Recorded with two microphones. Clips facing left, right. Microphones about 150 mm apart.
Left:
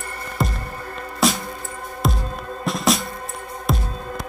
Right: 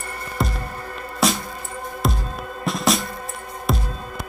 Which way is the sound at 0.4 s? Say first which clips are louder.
Even; centre (ahead or behind).